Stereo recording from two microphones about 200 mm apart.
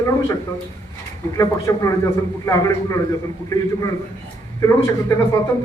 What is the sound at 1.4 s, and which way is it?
Speech, 15° left (ahead or behind).